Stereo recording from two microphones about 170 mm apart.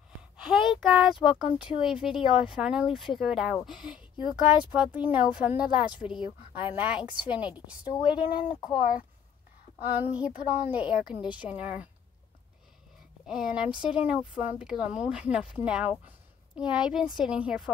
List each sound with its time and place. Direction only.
0.4 s a woman's voice: centre (ahead or behind)
7.9 s speech: 25° left (ahead or behind)
9.9 s a woman's voice: 10° right (ahead or behind)
13.3 s speech: 5° right (ahead or behind)